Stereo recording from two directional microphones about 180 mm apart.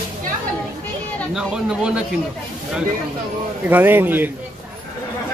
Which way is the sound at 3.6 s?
10° right (ahead or behind).